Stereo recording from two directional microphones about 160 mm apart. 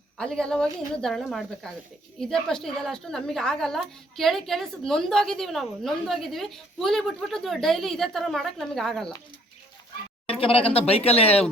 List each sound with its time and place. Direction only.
0.2 s a woman's voice: 5° left (ahead or behind)
10.2 s speech: 35° left (ahead or behind)